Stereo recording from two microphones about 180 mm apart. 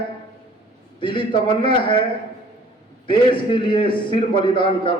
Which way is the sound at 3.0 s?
30° left (ahead or behind).